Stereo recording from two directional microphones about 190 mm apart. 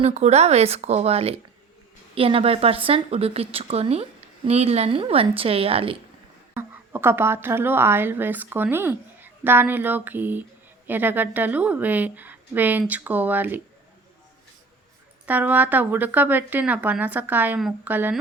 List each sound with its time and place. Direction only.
0.0 s a woman's voice: 35° right (ahead or behind)
6.5 s a woman's voice: 10° right (ahead or behind)
15.3 s a woman's voice: 10° right (ahead or behind)